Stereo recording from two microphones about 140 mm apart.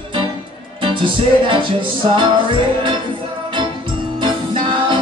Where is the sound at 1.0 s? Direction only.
35° right (ahead or behind).